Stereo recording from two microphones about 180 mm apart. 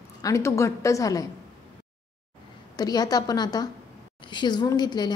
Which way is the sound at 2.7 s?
20° left (ahead or behind).